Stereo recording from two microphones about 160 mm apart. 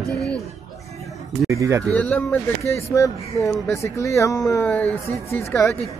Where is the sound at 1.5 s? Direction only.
20° right (ahead or behind).